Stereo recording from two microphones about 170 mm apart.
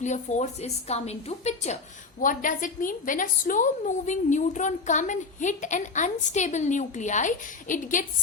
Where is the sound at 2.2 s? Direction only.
50° left (ahead or behind).